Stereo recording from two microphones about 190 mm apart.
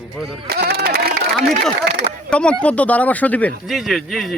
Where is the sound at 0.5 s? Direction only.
55° right (ahead or behind).